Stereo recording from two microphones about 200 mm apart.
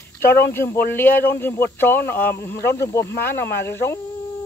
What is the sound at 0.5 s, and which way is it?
Speech, 10° left (ahead or behind).